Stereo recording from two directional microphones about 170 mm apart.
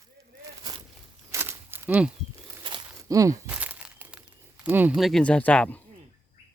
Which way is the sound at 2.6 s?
25° right (ahead or behind).